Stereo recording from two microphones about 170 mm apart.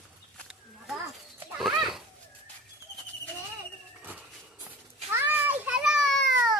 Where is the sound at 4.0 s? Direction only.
10° right (ahead or behind).